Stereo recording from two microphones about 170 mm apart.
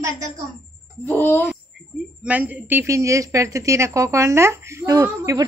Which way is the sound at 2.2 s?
10° right (ahead or behind).